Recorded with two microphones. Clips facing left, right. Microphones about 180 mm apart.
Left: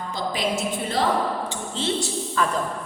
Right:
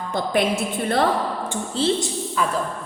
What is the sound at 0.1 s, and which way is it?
Speech, 55° right (ahead or behind).